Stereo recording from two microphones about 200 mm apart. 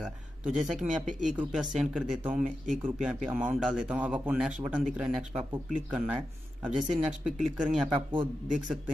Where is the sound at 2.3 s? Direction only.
40° right (ahead or behind).